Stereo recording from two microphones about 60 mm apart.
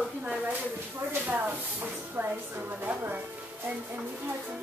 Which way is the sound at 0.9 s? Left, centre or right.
Right.